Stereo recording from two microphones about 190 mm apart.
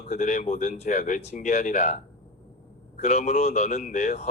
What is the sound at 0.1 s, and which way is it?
Speech, 40° left (ahead or behind).